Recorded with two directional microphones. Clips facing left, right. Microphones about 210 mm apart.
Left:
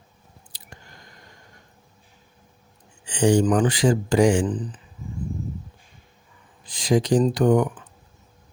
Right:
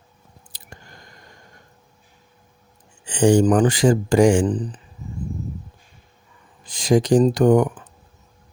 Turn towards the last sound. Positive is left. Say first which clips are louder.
# right 3 dB
turn(degrees=-45)  # may be behind; listen again after turning